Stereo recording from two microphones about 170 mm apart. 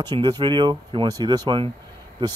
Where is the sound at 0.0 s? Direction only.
25° right (ahead or behind).